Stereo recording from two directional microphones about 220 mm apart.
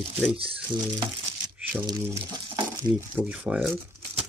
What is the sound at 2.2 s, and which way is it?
Crumpling, 20° right (ahead or behind).